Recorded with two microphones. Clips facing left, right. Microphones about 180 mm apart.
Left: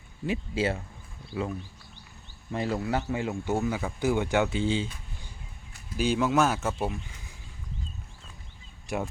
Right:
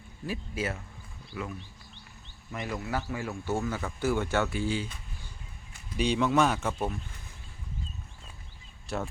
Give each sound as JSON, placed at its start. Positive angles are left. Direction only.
{"t": 0.3, "sound": "speech", "side_deg": 30}
{"t": 2.5, "sound": "speech", "side_deg": 30}
{"t": 6.0, "sound": "speech", "side_deg": 5}
{"t": 8.9, "sound": "speech", "side_deg": 15}